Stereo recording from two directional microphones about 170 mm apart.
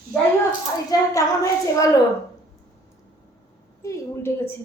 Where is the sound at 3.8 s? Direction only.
15° left (ahead or behind).